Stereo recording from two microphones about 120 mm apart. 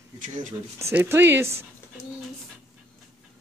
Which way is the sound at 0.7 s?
20° right (ahead or behind).